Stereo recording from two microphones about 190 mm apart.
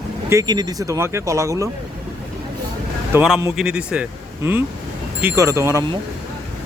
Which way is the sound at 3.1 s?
5° right (ahead or behind).